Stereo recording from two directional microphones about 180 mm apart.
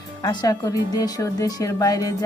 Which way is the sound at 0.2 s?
20° left (ahead or behind).